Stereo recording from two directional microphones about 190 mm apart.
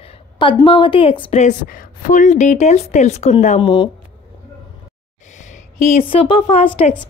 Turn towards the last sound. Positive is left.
turn(degrees=30)  # may be behind; listen again after turning